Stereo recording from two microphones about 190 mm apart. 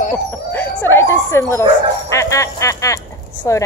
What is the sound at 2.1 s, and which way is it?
Speech, 15° left (ahead or behind).